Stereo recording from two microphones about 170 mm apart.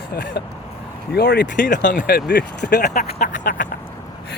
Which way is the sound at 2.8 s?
45° left (ahead or behind).